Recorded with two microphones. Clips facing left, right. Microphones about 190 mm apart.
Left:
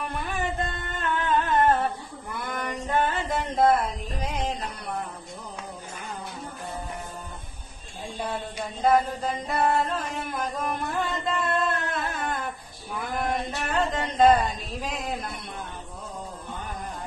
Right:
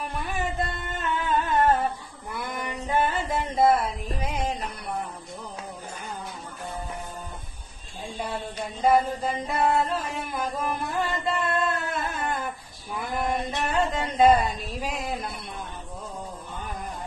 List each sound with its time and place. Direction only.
1.0 s music: 5° right (ahead or behind)
2.5 s a sound: 10° right (ahead or behind)
4.3 s music: 10° right (ahead or behind)
8.8 s chant: 10° right (ahead or behind)
12.9 s a sound: centre (ahead or behind)
15.0 s a man's voice: 5° right (ahead or behind)